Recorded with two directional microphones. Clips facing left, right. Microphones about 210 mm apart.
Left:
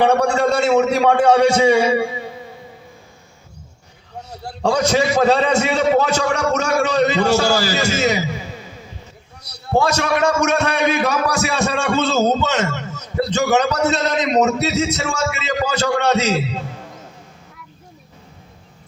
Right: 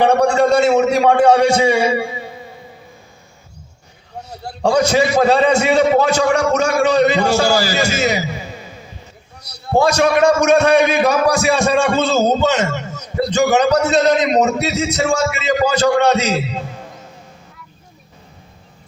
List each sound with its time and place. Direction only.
0.0 s a man's voice: 15° right (ahead or behind)
4.3 s a man's voice: 10° right (ahead or behind)
9.7 s a man's voice: 15° right (ahead or behind)